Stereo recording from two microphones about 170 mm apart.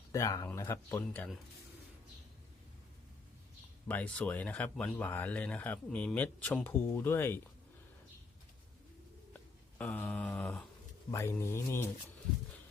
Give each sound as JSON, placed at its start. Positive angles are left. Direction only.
{"t": 0.1, "sound": "speech", "side_deg": 20}
{"t": 3.8, "sound": "speech", "side_deg": 10}
{"t": 9.3, "sound": "a sound", "side_deg": 10}
{"t": 11.1, "sound": "speech", "side_deg": 15}